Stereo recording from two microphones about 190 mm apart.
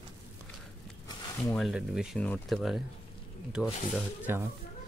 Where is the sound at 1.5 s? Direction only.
Centre (ahead or behind).